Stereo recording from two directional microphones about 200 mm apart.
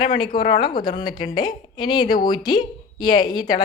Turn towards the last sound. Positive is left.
turn(degrees=20)  # may be behind; listen again after turning